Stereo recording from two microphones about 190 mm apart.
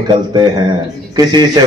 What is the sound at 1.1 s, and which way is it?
Speech, 20° right (ahead or behind).